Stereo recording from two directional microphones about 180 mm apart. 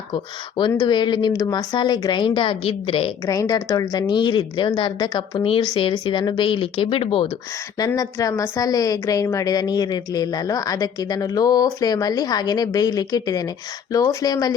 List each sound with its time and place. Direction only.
0.1 s a woman's voice: 25° left (ahead or behind)
3.2 s a woman's voice: 20° left (ahead or behind)
7.8 s a woman's voice: 20° left (ahead or behind)